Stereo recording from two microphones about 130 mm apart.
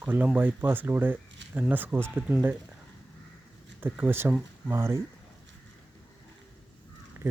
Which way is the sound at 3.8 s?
15° right (ahead or behind).